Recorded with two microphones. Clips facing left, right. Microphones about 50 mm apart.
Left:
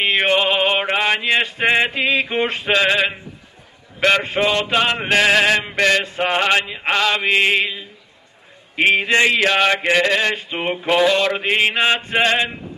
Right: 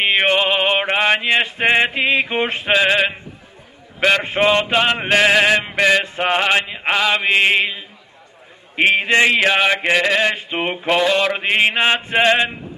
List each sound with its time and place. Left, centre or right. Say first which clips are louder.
0.0 s mantra: right 1 dB; centre
4.2 s mantra: right 3 dB; right
4.7 s mantra: right 1 dB; centre
8.7 s a man's voice: even; centre
9.1 s mantra: right 1 dB; centre
10.9 s mantra: left 1 dB; centre